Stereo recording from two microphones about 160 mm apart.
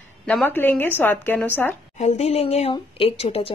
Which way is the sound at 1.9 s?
45° left (ahead or behind).